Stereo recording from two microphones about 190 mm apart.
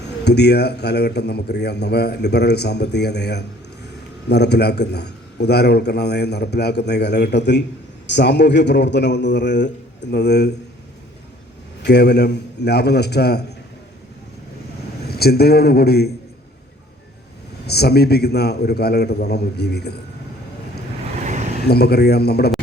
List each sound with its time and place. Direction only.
0.3 s a man's voice: 60° left (ahead or behind)
11.9 s a man's voice: 60° left (ahead or behind)
15.1 s a man's voice: 55° left (ahead or behind)
17.7 s a man's voice: 55° left (ahead or behind)
21.2 s vehicle: 40° right (ahead or behind)
21.7 s a man's voice: 55° left (ahead or behind)